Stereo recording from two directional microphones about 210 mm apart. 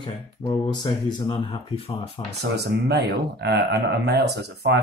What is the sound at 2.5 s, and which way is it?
Speech, 50° right (ahead or behind).